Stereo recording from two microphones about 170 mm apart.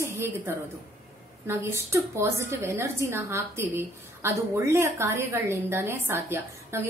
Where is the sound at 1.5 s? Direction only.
15° right (ahead or behind).